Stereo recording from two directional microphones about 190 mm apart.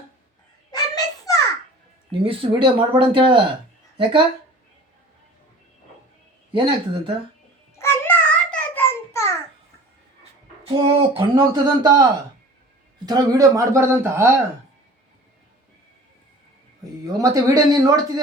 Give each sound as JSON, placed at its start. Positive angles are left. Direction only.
{"t": 0.7, "sound": "a sound", "side_deg": 20}
{"t": 2.2, "sound": "speech", "side_deg": -25}
{"t": 6.5, "sound": "speech", "side_deg": -25}
{"t": 7.8, "sound": "a sound", "side_deg": 10}
{"t": 10.6, "sound": "speech", "side_deg": -30}
{"t": 13.1, "sound": "a man's voice", "side_deg": -20}
{"t": 17.0, "sound": "speech", "side_deg": -20}